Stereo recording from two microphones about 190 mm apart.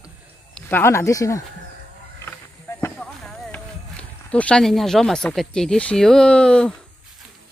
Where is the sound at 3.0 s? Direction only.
5° left (ahead or behind).